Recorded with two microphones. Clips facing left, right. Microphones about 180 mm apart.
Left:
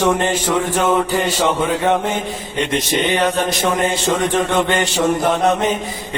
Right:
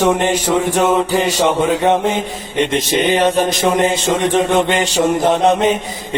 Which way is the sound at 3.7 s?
20° right (ahead or behind).